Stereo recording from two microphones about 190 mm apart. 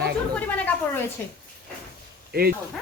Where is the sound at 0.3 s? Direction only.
10° left (ahead or behind).